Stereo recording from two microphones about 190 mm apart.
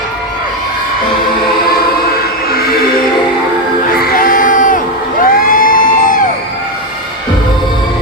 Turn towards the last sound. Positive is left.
turn(degrees=45)  # may be behind; listen again after turning